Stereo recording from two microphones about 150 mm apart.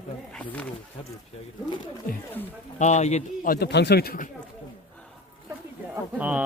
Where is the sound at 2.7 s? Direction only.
50° left (ahead or behind); by 4.3 s 75° left (ahead or behind).